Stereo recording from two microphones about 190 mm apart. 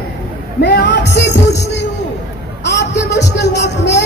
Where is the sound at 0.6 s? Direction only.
60° left (ahead or behind).